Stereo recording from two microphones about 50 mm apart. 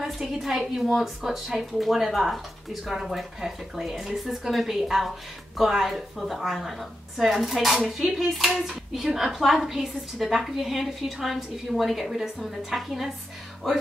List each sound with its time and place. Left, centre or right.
0.0 s a woman's voice: centre